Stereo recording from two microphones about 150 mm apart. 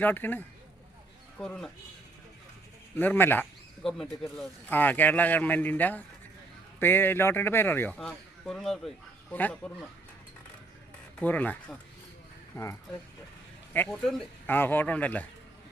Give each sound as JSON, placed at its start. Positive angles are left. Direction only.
{"t": 0.0, "sound": "a man's voice", "side_deg": 15}
{"t": 2.9, "sound": "a man's voice", "side_deg": 10}
{"t": 11.2, "sound": "a man's voice", "side_deg": 10}
{"t": 13.7, "sound": "a man's voice", "side_deg": 5}